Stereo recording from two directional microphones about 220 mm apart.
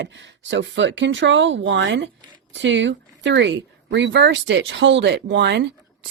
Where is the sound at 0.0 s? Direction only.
55° right (ahead or behind).